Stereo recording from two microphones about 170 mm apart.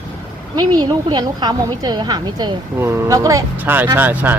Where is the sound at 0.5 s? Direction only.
25° right (ahead or behind).